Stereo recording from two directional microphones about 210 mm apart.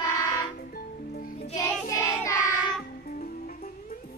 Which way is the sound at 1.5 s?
15° left (ahead or behind).